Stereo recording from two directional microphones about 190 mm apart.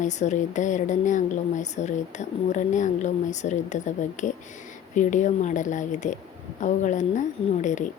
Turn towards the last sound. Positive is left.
turn(degrees=40)  # may be behind; listen again after turning